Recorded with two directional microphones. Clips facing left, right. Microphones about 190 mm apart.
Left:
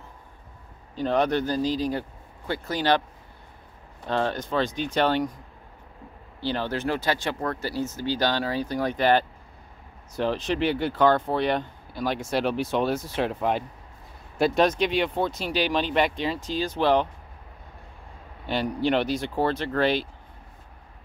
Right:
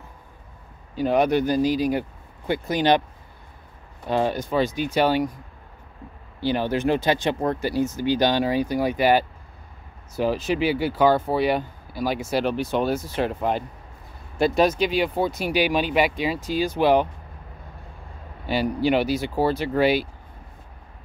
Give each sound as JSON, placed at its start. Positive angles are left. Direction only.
{"t": 0.9, "sound": "speech", "side_deg": -10}
{"t": 4.0, "sound": "speech", "side_deg": -10}
{"t": 6.4, "sound": "speech", "side_deg": -15}
{"t": 18.5, "sound": "speech", "side_deg": -5}